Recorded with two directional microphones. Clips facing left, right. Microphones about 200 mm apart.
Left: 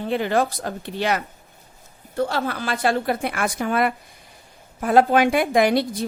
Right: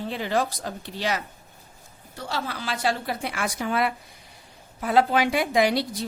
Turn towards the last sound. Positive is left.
turn(degrees=55)  # may be behind; listen again after turning